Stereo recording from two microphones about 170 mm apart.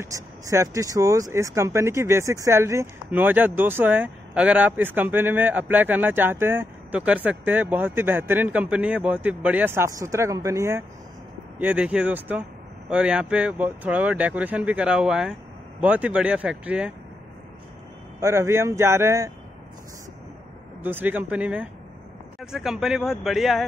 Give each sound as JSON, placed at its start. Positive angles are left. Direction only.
{"t": 0.0, "sound": "speech", "side_deg": -15}
{"t": 18.2, "sound": "speech", "side_deg": -15}
{"t": 20.8, "sound": "speech", "side_deg": -10}